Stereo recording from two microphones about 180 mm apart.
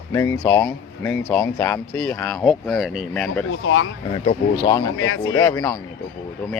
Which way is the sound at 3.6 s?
90° left.